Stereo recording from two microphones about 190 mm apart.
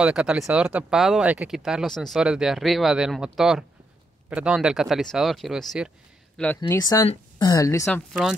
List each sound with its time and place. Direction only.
0.0 s speech: 5° right (ahead or behind)
6.7 s speech: 20° left (ahead or behind)
7.8 s speech: centre (ahead or behind)